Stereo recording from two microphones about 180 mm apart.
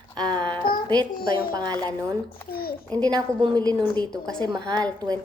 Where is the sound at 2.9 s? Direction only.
5° left (ahead or behind).